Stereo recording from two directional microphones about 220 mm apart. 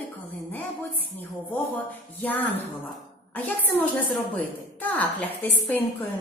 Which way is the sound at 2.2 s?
10° left (ahead or behind).